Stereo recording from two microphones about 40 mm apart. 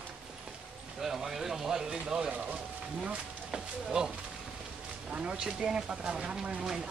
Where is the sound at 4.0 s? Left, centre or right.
Right.